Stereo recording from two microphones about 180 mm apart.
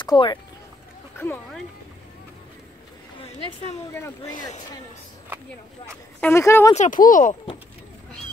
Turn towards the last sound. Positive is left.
turn(degrees=45)  # may be behind; listen again after turning